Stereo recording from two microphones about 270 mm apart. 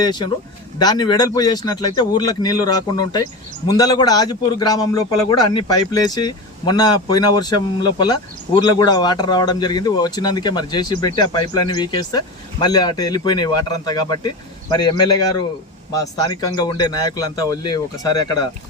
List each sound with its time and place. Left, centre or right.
0.0 s a man's voice: centre